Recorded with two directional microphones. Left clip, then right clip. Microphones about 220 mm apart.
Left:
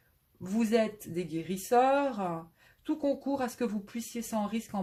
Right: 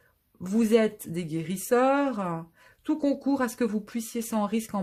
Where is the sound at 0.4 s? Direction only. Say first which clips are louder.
Right 5 dB; 45° right (ahead or behind).